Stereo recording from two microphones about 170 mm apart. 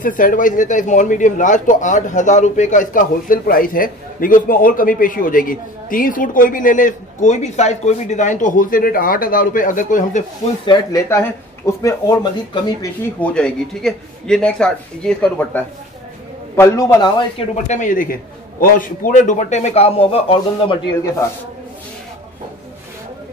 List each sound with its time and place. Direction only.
0.0 s a man's voice: 50° left (ahead or behind)
10.6 s speech: 30° left (ahead or behind)
11.1 s speech: 15° left (ahead or behind)
13.0 s a man's voice: 5° left (ahead or behind)
17.4 s a man's voice: 45° left (ahead or behind)